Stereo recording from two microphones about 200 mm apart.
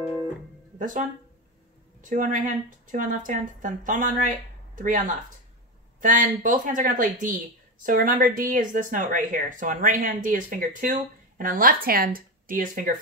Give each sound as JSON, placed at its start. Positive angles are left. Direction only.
{"t": 0.7, "sound": "speech", "side_deg": -40}